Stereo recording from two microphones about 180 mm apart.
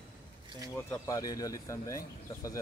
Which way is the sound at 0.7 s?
15° left (ahead or behind).